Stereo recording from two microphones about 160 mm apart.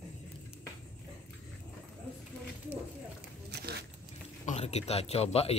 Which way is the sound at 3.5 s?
90° right.